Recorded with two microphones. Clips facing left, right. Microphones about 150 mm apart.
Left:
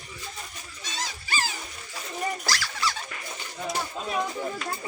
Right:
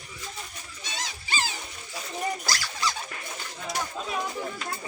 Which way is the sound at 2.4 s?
15° right (ahead or behind).